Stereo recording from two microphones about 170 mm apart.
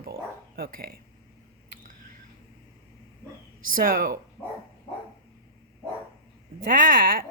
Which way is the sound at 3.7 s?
55° right (ahead or behind).